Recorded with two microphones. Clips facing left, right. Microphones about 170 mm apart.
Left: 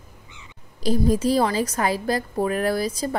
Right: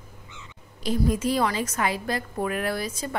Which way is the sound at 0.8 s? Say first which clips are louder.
Left 4 dB; 35° left (ahead or behind).